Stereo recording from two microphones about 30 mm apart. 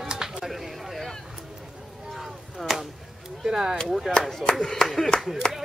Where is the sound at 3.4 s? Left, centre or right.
Right.